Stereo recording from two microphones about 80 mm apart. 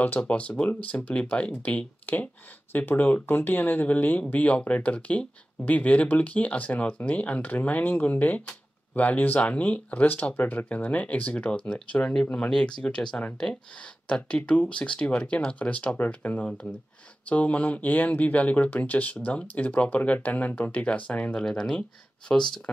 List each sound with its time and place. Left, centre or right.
0.0 s speech: left